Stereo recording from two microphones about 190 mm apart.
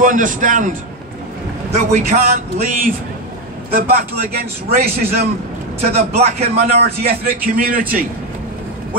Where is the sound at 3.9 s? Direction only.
55° right (ahead or behind).